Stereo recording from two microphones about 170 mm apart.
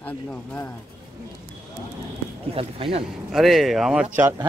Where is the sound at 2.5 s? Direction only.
35° right (ahead or behind).